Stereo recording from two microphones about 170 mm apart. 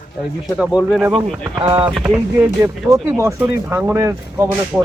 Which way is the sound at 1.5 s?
30° right (ahead or behind).